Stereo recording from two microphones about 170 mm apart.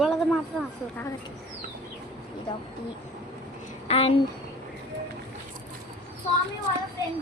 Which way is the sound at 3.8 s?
35° left (ahead or behind).